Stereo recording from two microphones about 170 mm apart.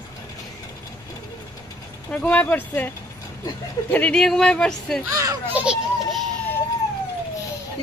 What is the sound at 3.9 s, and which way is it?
Speech, 5° left (ahead or behind).